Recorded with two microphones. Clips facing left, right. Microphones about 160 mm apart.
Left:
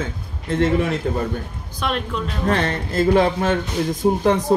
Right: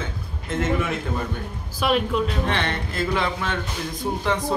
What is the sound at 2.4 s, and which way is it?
A woman's voice, 40° left (ahead or behind).